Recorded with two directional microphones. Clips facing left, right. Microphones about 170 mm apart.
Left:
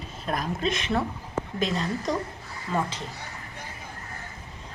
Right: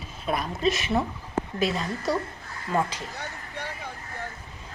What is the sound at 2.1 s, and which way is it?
Speech, 5° right (ahead or behind).